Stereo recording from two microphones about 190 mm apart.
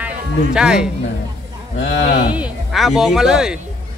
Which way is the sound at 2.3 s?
Centre (ahead or behind).